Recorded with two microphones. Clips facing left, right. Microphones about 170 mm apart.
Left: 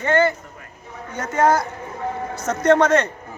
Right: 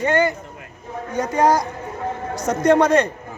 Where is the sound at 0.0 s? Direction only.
15° right (ahead or behind).